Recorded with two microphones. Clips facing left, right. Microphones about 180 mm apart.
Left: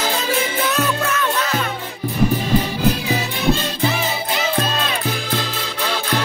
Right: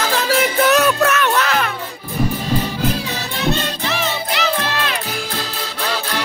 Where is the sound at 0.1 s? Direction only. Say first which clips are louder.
Right 3 dB; 80° right.